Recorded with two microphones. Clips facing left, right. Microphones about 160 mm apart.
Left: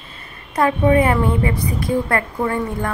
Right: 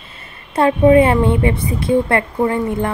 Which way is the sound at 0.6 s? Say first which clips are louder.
Right 5 dB; 25° right (ahead or behind).